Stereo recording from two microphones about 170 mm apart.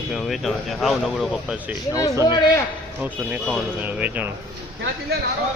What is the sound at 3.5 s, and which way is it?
Speech, 10° right (ahead or behind).